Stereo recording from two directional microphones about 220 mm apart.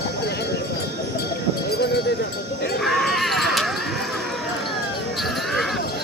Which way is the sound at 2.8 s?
Centre (ahead or behind).